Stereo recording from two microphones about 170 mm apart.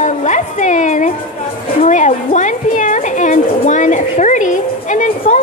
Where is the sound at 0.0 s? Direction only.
45° left (ahead or behind).